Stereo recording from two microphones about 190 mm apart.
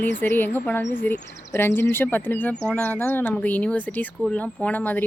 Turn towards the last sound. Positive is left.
turn(degrees=10)  # may be behind; listen again after turning